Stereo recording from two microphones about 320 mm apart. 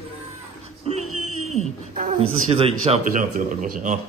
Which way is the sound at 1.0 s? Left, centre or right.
Right.